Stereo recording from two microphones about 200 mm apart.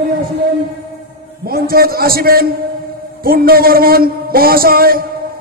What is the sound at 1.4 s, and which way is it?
A man's voice, 50° right (ahead or behind).